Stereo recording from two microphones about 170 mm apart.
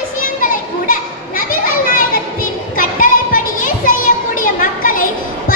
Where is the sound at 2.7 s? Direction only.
55° left (ahead or behind).